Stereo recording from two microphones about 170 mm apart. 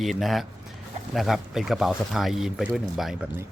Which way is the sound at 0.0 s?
Centre (ahead or behind).